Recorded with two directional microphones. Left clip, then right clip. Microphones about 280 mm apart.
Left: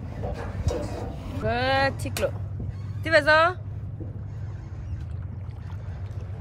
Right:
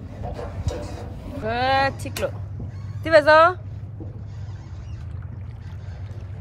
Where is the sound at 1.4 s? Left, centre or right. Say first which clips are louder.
Right 3 dB; centre.